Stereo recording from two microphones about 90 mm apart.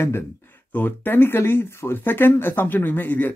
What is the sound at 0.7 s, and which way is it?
Speech, 20° left (ahead or behind).